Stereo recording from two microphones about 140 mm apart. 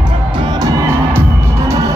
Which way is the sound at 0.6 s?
20° right (ahead or behind).